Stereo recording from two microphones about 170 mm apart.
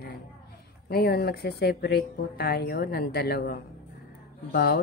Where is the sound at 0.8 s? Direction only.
65° left (ahead or behind).